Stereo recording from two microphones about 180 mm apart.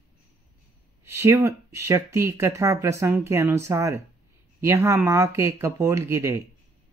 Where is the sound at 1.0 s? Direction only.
15° right (ahead or behind).